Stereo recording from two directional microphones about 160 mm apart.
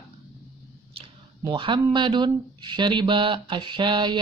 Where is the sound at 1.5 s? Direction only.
30° right (ahead or behind).